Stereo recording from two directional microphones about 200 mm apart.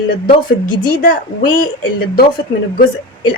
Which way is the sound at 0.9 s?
45° left (ahead or behind).